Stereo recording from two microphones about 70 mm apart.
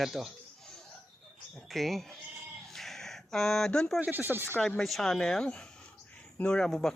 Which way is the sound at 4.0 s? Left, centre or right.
Right.